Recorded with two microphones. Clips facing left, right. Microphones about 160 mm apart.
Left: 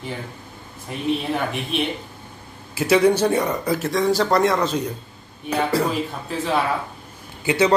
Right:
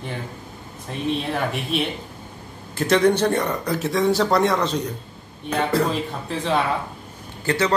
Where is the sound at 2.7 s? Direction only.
5° left (ahead or behind).